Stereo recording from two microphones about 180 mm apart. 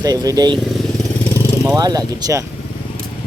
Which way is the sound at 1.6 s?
20° right (ahead or behind).